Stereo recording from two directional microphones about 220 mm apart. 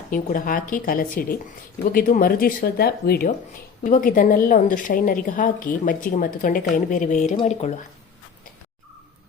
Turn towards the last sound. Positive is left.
turn(degrees=30)  # may be behind; listen again after turning